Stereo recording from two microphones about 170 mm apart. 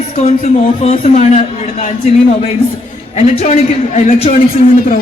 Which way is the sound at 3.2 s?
40° left (ahead or behind).